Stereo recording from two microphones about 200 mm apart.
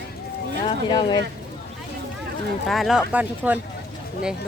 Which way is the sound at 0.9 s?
20° left (ahead or behind).